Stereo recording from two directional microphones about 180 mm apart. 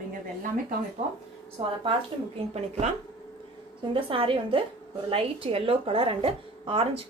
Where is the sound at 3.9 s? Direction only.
30° right (ahead or behind).